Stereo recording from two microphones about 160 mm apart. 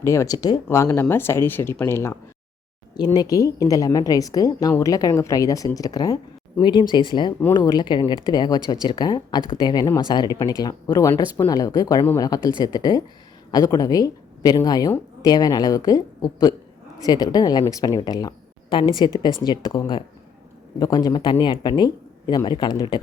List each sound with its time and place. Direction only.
0.0 s speech: 15° left (ahead or behind)